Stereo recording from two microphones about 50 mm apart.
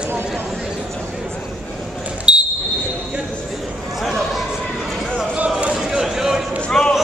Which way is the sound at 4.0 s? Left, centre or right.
Centre.